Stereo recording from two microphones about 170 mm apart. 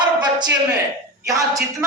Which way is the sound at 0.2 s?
25° right (ahead or behind).